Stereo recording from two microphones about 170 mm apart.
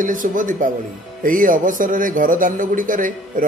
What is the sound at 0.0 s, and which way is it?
Speech, 50° right (ahead or behind).